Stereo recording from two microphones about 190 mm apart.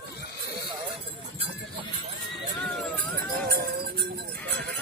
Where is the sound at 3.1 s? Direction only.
50° right (ahead or behind).